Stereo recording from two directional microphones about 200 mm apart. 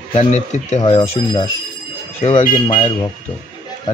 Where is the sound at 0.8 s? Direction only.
25° left (ahead or behind).